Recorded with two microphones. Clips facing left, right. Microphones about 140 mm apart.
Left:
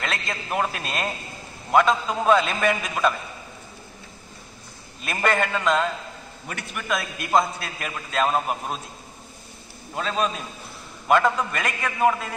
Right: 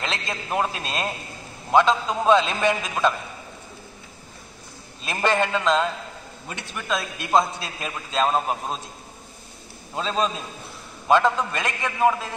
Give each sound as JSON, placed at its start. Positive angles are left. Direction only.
{"t": 0.0, "sound": "a man's voice", "side_deg": -25}
{"t": 5.0, "sound": "a man's voice", "side_deg": -25}
{"t": 9.9, "sound": "a man's voice", "side_deg": -25}
{"t": 11.5, "sound": "a man's voice", "side_deg": -25}